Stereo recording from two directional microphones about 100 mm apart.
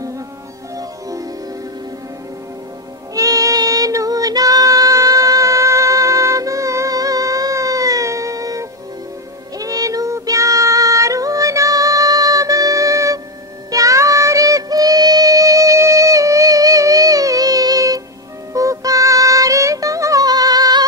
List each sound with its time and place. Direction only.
3.2 s child singing: 35° right (ahead or behind)
13.7 s music: 35° right (ahead or behind)